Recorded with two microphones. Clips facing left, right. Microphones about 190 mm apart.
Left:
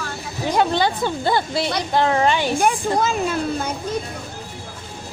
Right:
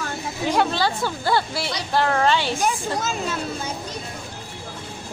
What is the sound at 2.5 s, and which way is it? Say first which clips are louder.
A woman's voice: left 5 dB; 55° left (ahead or behind).